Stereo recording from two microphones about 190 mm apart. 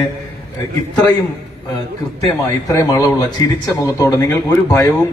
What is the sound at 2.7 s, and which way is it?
A man's voice, 20° left (ahead or behind).